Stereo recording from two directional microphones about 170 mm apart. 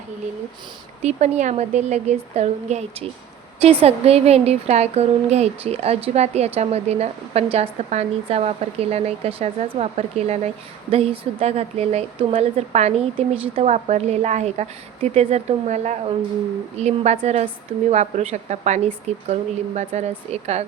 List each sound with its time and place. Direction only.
1.0 s a woman's voice: 40° right (ahead or behind)